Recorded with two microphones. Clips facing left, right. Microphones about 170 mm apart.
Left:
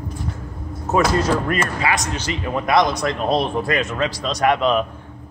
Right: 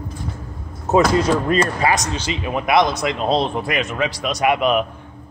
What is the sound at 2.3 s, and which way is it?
A man's voice, 15° right (ahead or behind).